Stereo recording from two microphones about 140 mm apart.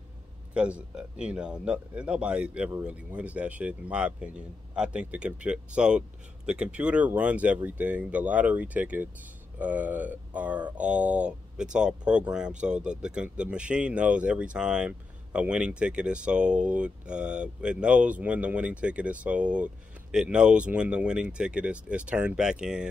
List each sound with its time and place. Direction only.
0.6 s speech: 10° right (ahead or behind)